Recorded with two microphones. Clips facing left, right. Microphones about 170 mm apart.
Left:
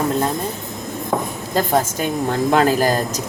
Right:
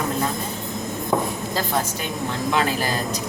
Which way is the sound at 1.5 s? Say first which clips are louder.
Left 8 dB; 45° left (ahead or behind).